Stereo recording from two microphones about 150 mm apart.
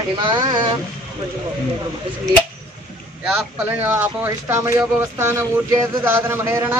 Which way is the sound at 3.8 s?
15° right (ahead or behind).